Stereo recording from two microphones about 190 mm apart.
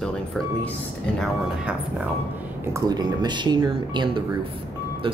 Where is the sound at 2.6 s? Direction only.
15° right (ahead or behind).